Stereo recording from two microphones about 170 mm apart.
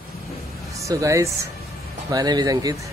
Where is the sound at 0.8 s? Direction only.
20° right (ahead or behind).